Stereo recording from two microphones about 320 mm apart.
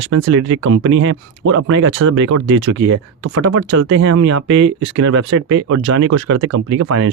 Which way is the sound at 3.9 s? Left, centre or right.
Right.